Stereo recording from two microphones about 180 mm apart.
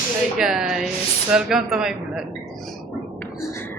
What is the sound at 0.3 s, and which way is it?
Speech, 5° right (ahead or behind).